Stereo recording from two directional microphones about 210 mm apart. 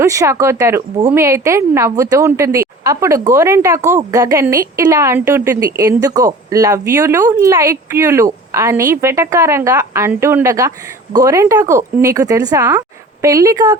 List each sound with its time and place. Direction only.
0.0 s a woman's voice: 15° right (ahead or behind)